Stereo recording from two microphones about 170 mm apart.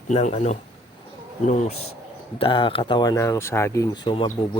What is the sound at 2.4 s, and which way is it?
Speech, 30° left (ahead or behind).